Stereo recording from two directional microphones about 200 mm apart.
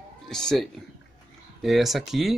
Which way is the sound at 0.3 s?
5° left (ahead or behind).